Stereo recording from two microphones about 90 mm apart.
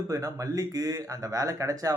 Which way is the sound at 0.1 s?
40° right (ahead or behind).